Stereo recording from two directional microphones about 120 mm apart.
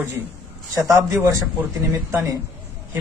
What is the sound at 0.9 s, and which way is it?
A man's voice, 25° right (ahead or behind).